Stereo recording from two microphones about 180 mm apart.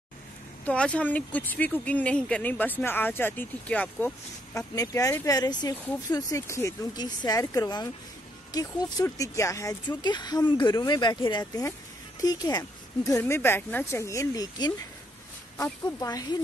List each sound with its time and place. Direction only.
0.7 s speech: 5° left (ahead or behind)
4.6 s speech: 20° left (ahead or behind)